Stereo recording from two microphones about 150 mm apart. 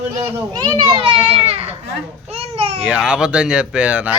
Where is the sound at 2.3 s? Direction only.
40° right (ahead or behind).